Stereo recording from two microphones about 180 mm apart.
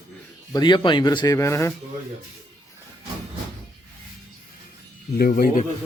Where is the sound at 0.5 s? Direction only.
25° left (ahead or behind).